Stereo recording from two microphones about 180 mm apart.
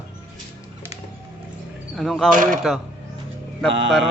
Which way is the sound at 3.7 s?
90° right.